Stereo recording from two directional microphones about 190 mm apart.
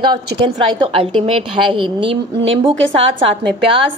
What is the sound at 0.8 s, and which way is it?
A woman's voice, 30° right (ahead or behind).